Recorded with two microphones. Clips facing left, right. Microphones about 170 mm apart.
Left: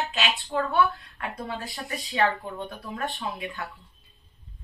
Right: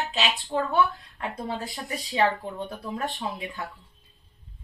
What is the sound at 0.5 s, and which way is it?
Speech, 25° right (ahead or behind).